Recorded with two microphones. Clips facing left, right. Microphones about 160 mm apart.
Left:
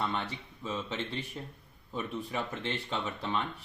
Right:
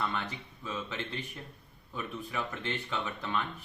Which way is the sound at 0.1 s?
30° left (ahead or behind).